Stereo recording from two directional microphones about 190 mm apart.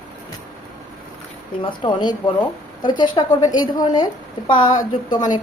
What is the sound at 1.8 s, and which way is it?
A woman's voice, 25° left (ahead or behind).